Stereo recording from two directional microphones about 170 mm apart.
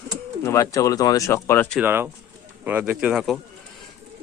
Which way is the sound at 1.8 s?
15° right (ahead or behind).